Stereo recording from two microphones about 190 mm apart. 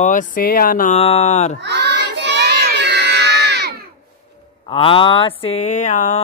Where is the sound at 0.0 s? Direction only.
45° left (ahead or behind).